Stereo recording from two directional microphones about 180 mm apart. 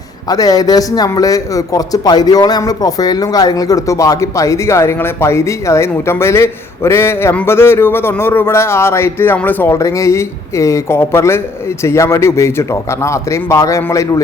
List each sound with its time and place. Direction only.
0.3 s a man's voice: 20° left (ahead or behind)